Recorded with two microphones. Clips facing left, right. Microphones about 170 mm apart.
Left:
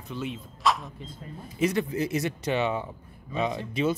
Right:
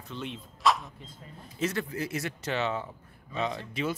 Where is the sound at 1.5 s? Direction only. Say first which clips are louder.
Left 5 dB; 15° left (ahead or behind).